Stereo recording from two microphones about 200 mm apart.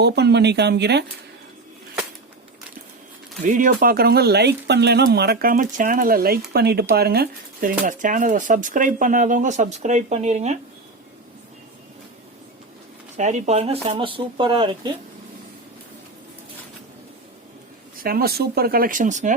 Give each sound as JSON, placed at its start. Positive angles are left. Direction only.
{"t": 0.0, "sound": "speech", "side_deg": -55}
{"t": 3.4, "sound": "speech", "side_deg": -40}
{"t": 13.1, "sound": "speech", "side_deg": -35}
{"t": 18.0, "sound": "speech", "side_deg": -50}